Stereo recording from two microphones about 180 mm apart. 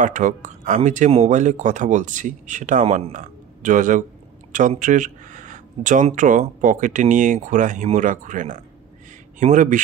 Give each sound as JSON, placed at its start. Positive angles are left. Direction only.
{"t": 0.0, "sound": "speech", "side_deg": -45}